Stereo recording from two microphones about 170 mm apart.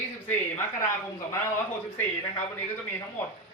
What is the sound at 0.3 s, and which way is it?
Speech, 15° left (ahead or behind).